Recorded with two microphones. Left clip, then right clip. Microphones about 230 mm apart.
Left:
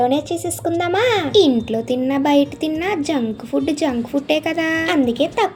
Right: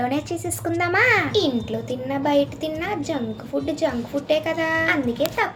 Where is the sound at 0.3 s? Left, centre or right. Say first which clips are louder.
Left 5 dB; centre.